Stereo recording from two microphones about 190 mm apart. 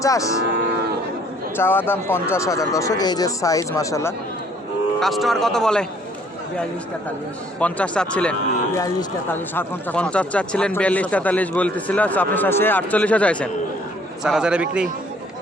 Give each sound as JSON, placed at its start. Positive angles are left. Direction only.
{"t": 0.0, "sound": "speech", "side_deg": 15}
{"t": 1.5, "sound": "speech", "side_deg": 10}
{"t": 4.9, "sound": "speech", "side_deg": 0}
{"t": 7.6, "sound": "speech", "side_deg": 5}
{"t": 14.3, "sound": "speech", "side_deg": -5}